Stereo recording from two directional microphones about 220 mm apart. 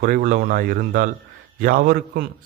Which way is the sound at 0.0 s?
40° right (ahead or behind).